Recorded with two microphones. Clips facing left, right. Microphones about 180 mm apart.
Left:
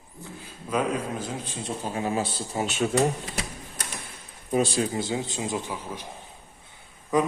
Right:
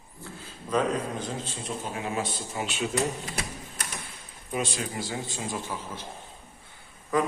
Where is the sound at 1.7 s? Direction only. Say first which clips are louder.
Left 5 dB; 35° left (ahead or behind).